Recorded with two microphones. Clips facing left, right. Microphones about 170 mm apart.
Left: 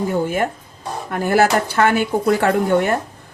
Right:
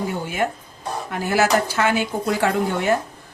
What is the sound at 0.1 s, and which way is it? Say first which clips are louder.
A woman's voice: left 5 dB; 50° left (ahead or behind).